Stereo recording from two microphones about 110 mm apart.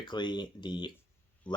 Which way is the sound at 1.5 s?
15° left (ahead or behind).